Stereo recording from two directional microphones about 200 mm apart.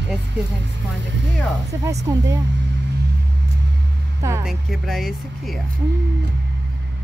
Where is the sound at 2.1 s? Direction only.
15° right (ahead or behind).